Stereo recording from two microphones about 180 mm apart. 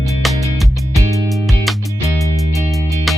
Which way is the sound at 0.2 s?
Centre (ahead or behind).